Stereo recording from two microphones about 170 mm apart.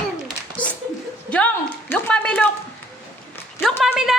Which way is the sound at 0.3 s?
10° left (ahead or behind).